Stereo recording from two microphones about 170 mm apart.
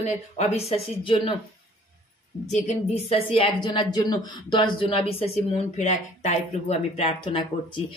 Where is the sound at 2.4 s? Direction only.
45° left (ahead or behind).